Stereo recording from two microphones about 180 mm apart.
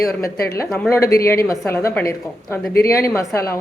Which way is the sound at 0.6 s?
5° left (ahead or behind).